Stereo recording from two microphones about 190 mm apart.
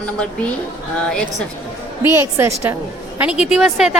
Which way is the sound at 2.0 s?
15° right (ahead or behind).